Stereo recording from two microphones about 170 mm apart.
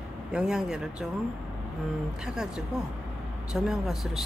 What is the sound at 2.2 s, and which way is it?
Speech, 5° right (ahead or behind).